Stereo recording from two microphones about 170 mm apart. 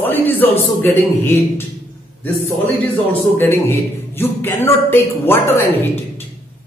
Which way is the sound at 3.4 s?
15° left (ahead or behind).